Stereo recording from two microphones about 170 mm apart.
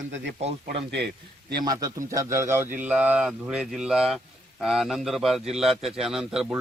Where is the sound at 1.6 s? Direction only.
20° right (ahead or behind); by 6.6 s 5° right (ahead or behind).